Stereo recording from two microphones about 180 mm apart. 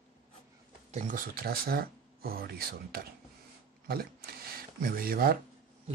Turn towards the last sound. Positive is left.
turn(degrees=-55)  # may be behind; listen again after turning